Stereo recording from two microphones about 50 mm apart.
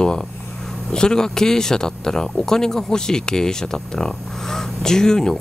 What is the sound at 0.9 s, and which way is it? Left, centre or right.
Speech, centre.